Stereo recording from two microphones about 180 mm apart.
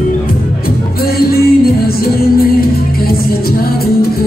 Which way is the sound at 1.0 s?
60° left (ahead or behind).